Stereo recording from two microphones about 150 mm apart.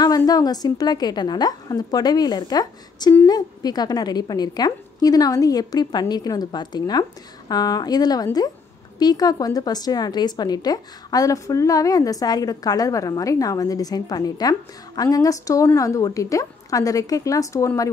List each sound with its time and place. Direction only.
0.0 s speech: 25° left (ahead or behind)